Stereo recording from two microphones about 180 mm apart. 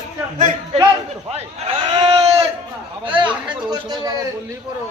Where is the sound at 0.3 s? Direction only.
45° right (ahead or behind).